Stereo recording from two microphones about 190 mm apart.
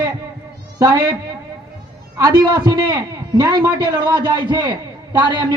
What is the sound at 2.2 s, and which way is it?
A man's voice, 20° right (ahead or behind).